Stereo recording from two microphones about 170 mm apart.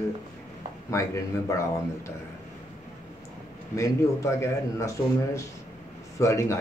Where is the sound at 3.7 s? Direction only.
15° left (ahead or behind).